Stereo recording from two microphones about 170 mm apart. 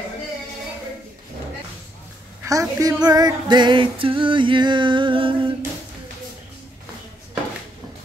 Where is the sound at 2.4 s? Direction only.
20° right (ahead or behind).